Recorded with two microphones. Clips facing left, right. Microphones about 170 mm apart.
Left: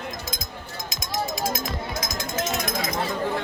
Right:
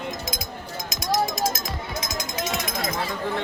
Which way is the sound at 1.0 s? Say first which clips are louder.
Right 6 dB; 75° right (ahead or behind).